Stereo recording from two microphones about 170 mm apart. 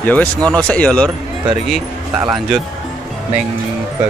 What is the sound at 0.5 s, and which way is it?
Speech, 5° left (ahead or behind).